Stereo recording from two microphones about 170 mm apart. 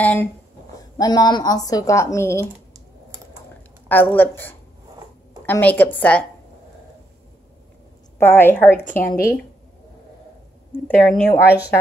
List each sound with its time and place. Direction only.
0.0 s a woman's voice: 10° left (ahead or behind)
0.9 s speech: 25° left (ahead or behind)
3.9 s a woman's voice: 10° left (ahead or behind)
8.2 s a woman's voice: 15° left (ahead or behind)
8.8 s a woman's voice: 50° left (ahead or behind)
11.0 s a woman's voice: 5° left (ahead or behind)